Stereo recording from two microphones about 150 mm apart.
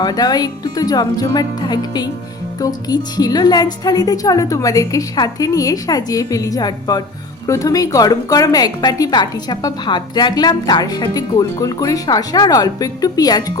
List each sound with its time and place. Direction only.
0.0 s a woman's voice: 25° left (ahead or behind)